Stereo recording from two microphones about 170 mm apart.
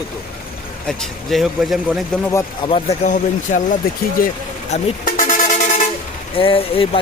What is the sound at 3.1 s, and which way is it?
Speech, 45° left (ahead or behind).